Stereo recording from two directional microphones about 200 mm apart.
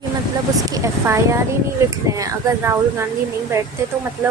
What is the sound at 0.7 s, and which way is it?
A woman's voice, 15° right (ahead or behind).